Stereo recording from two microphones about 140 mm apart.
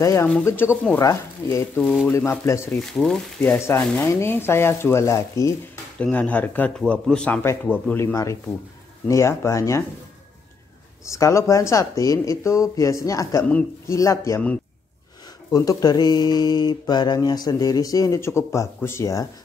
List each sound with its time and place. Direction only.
0.0 s speech: 20° left (ahead or behind)
1.8 s speech: 5° left (ahead or behind)
2.0 s speech: 15° left (ahead or behind)
2.7 s speech: 5° left (ahead or behind)
3.5 s speech: 20° left (ahead or behind)
5.9 s speech: 10° left (ahead or behind)
11.1 s speech: 20° left (ahead or behind)
15.5 s speech: 25° left (ahead or behind)